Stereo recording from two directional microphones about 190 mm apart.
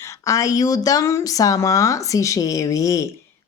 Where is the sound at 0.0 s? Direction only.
15° left (ahead or behind).